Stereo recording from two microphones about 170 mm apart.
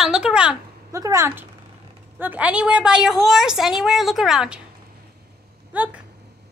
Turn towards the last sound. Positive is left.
turn(degrees=-10)  # may be behind; listen again after turning